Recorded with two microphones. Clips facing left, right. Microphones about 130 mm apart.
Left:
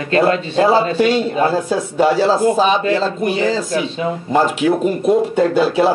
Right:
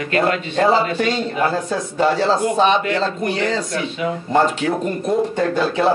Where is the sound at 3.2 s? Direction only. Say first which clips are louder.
Left 3 dB; 5° left (ahead or behind).